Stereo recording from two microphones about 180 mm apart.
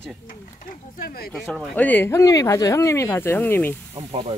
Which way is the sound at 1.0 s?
55° left (ahead or behind).